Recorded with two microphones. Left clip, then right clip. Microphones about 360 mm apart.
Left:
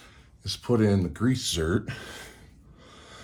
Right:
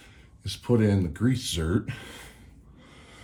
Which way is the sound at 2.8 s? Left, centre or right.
Centre.